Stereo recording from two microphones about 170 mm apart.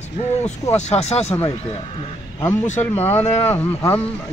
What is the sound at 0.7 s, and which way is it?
Speech, 40° left (ahead or behind).